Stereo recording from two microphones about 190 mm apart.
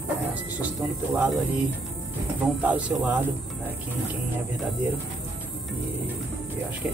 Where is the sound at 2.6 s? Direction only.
5° right (ahead or behind).